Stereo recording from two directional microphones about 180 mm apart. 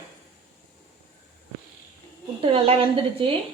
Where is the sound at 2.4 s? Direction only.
30° right (ahead or behind).